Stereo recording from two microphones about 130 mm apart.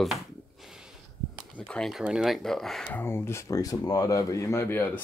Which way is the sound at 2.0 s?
5° right (ahead or behind).